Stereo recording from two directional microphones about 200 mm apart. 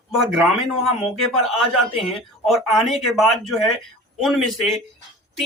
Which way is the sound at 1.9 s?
30° left (ahead or behind).